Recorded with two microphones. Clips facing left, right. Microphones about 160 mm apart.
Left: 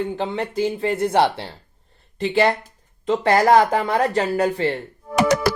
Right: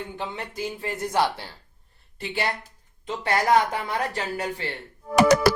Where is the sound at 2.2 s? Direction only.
90° left.